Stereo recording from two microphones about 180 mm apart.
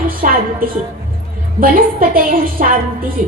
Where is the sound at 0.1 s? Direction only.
55° right (ahead or behind).